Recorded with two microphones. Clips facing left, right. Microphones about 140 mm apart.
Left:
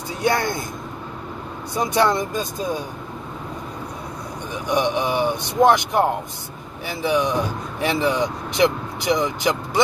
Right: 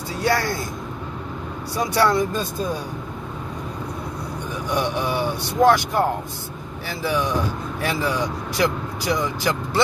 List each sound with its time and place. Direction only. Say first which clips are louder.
0.2 s speech: left 1 dB; 20° left (ahead or behind)
1.8 s speech: even; 20° left (ahead or behind)
4.6 s speech: left 3 dB; 20° left (ahead or behind)